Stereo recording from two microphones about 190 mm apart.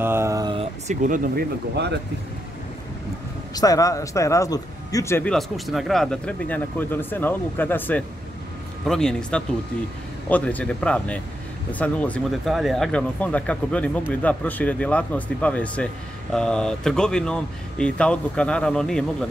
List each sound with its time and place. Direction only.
0.0 s a sound: 15° right (ahead or behind)
0.6 s speech: 40° right (ahead or behind); by 2.0 s 60° right (ahead or behind)
3.5 s speech: 20° left (ahead or behind); by 19.2 s 5° left (ahead or behind)